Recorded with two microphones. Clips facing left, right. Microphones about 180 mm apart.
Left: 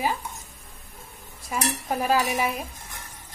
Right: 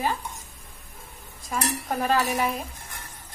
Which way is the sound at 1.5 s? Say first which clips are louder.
Left 1 dB; 5° left (ahead or behind).